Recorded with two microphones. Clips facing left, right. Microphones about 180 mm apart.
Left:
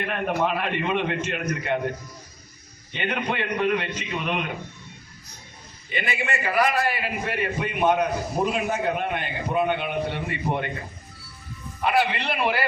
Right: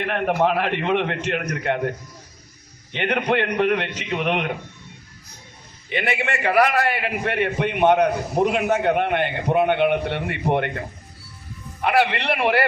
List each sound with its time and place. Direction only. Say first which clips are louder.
0.0 s a man's voice: right 4 dB; 75° right (ahead or behind)
2.9 s a man's voice: right 6 dB; 70° right (ahead or behind)
5.9 s a man's voice: right 4 dB; 70° right (ahead or behind)